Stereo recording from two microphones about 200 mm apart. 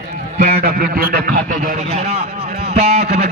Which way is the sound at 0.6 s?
45° right (ahead or behind).